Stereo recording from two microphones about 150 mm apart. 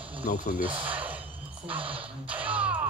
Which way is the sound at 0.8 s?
10° right (ahead or behind).